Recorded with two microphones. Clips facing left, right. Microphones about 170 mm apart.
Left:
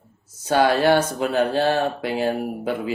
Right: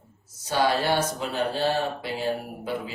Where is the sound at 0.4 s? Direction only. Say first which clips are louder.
Left 6 dB; 60° left (ahead or behind).